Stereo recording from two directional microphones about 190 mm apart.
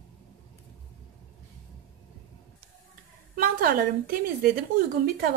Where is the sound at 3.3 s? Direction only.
50° right (ahead or behind).